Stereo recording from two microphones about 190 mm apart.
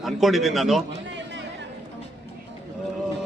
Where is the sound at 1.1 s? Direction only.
70° right (ahead or behind).